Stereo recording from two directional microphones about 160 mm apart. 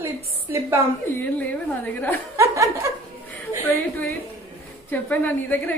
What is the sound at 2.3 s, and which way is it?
Speech, 20° right (ahead or behind).